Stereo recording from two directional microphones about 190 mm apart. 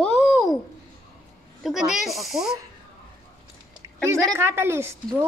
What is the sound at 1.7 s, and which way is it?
Speech, centre (ahead or behind).